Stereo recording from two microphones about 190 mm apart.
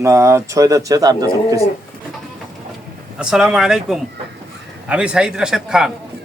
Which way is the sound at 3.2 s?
5° right (ahead or behind).